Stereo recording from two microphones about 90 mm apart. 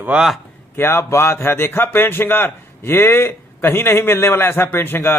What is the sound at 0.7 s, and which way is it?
A man's voice, 30° left (ahead or behind).